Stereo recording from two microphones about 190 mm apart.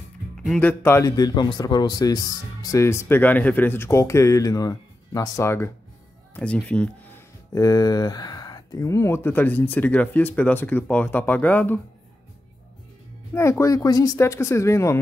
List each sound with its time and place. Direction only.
0.4 s speech: 5° left (ahead or behind)
7.5 s speech: 20° left (ahead or behind)
13.3 s speech: 15° left (ahead or behind)